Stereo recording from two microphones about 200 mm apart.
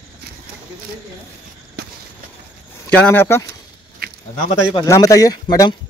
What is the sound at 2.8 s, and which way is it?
Speech, 10° left (ahead or behind).